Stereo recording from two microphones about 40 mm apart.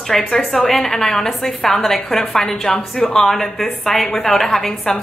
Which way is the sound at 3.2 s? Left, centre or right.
Centre.